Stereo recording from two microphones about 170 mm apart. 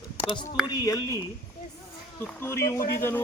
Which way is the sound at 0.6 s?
20° left (ahead or behind).